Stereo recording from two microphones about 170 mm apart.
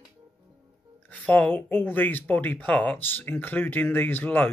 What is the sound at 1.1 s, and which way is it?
Speech, 10° left (ahead or behind).